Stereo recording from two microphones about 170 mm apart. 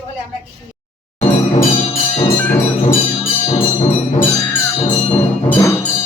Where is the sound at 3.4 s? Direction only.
40° left (ahead or behind).